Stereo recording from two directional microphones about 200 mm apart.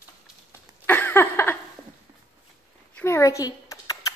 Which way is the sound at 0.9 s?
10° left (ahead or behind).